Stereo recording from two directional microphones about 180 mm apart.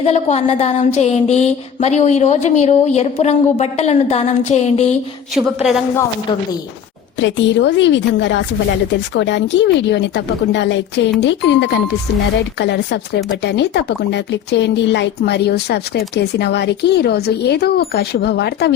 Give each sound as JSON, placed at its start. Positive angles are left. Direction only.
{"t": 0.0, "sound": "a sound", "side_deg": 35}
{"t": 5.3, "sound": "a woman's voice", "side_deg": 0}
{"t": 7.2, "sound": "a woman's voice", "side_deg": 85}